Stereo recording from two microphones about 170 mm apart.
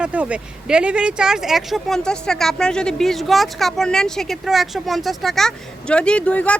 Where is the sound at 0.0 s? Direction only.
5° right (ahead or behind).